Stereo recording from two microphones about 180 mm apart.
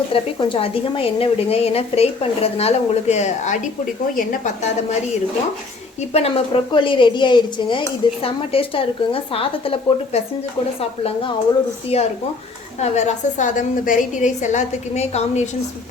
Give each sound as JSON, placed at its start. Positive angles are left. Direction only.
{"t": 0.1, "sound": "speech", "side_deg": 30}
{"t": 6.1, "sound": "speech", "side_deg": 35}
{"t": 11.9, "sound": "speech", "side_deg": 35}